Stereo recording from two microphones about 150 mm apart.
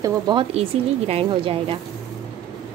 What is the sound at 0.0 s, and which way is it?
Speech, 30° right (ahead or behind).